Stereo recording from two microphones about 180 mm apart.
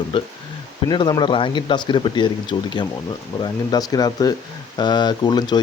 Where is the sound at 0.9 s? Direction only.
25° left (ahead or behind).